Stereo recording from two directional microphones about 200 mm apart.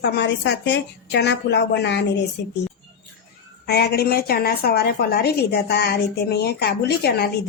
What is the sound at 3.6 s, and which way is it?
A woman's voice, 55° left (ahead or behind).